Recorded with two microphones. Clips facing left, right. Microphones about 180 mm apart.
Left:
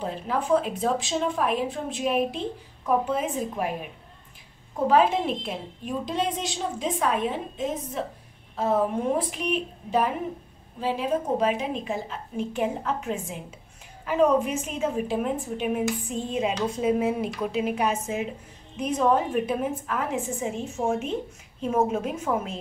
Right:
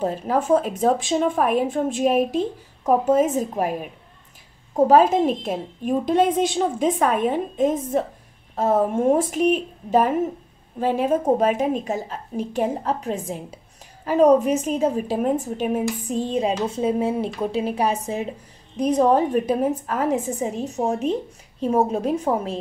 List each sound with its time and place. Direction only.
0.0 s a woman's voice: 45° right (ahead or behind)
4.7 s a woman's voice: 45° right (ahead or behind)